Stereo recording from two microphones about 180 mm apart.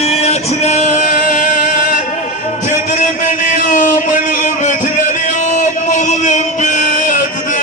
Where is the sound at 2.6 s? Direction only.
45° left (ahead or behind).